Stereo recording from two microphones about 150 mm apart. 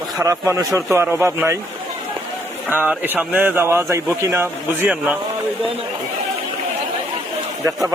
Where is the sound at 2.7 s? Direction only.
10° right (ahead or behind).